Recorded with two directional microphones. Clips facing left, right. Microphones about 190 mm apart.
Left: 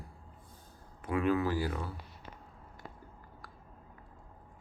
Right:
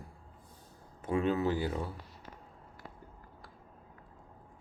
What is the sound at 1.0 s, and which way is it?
Speech, 25° right (ahead or behind).